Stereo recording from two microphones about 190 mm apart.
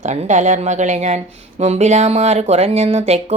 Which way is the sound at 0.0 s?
40° right (ahead or behind).